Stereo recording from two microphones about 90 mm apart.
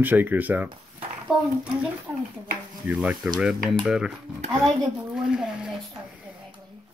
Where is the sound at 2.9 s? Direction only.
10° right (ahead or behind).